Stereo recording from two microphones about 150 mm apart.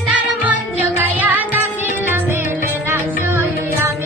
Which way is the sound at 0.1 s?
10° right (ahead or behind).